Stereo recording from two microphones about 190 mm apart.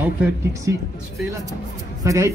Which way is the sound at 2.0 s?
15° right (ahead or behind).